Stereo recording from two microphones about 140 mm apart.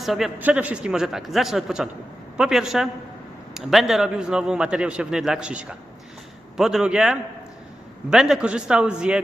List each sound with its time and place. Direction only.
0.0 s a man's voice: centre (ahead or behind)